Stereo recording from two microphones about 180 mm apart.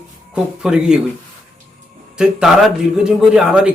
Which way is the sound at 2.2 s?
5° right (ahead or behind).